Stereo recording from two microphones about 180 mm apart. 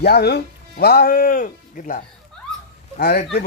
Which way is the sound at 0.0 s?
65° left (ahead or behind).